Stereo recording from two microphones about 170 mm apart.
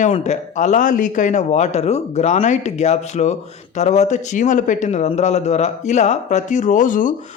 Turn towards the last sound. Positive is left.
turn(degrees=50)  # may be behind; listen again after turning